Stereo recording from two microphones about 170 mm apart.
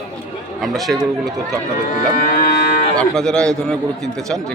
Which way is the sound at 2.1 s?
60° left (ahead or behind).